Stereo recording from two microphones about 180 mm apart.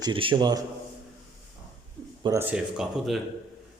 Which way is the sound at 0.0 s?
30° right (ahead or behind).